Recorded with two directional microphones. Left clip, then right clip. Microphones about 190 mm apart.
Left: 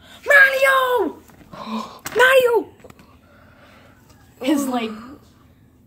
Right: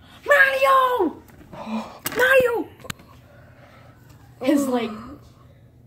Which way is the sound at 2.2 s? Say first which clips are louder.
Left 4 dB; 65° left (ahead or behind).